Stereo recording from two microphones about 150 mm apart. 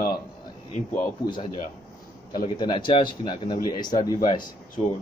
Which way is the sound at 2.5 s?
30° left (ahead or behind).